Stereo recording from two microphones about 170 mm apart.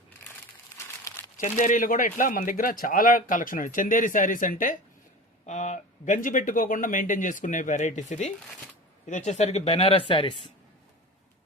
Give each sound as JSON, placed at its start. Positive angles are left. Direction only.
{"t": 1.4, "sound": "speech", "side_deg": 50}